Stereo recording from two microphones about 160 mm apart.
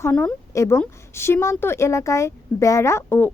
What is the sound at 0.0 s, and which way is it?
A woman's voice, 10° left (ahead or behind).